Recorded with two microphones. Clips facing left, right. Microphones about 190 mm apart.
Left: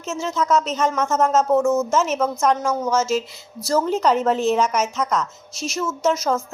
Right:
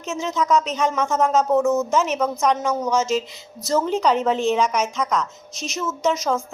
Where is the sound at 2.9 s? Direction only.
15° right (ahead or behind).